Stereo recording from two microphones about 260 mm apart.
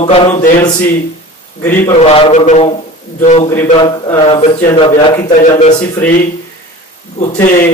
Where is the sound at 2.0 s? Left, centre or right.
Left.